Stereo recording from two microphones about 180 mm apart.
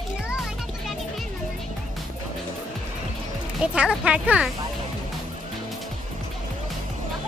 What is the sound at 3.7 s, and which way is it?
Speech, 5° right (ahead or behind).